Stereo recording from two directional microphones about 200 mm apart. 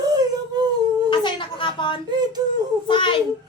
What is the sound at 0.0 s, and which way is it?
Whimper, 20° right (ahead or behind).